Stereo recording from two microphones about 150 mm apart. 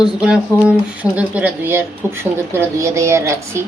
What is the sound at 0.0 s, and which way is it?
Speech, 5° right (ahead or behind).